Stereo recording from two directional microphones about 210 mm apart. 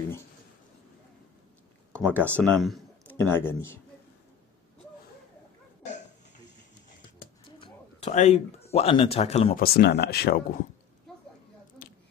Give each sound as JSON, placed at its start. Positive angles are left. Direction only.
{"t": 2.0, "sound": "speech", "side_deg": -10}
{"t": 2.5, "sound": "a sound", "side_deg": 0}
{"t": 3.2, "sound": "speech", "side_deg": 10}
{"t": 7.5, "sound": "speech", "side_deg": 30}
{"t": 9.6, "sound": "speech", "side_deg": 50}